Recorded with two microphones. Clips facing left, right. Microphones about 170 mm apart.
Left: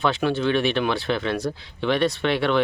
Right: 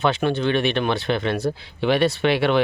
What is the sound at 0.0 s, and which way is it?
Speech, centre (ahead or behind).